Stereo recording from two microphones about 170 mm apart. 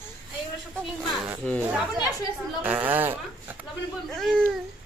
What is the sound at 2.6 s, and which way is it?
Speech, 10° right (ahead or behind).